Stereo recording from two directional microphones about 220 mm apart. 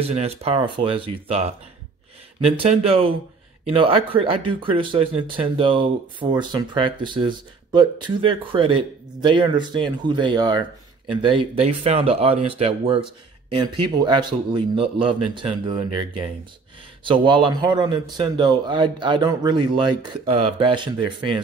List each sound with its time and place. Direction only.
0.1 s speech: 30° right (ahead or behind)